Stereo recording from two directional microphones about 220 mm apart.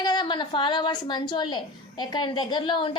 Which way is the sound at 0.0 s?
20° left (ahead or behind).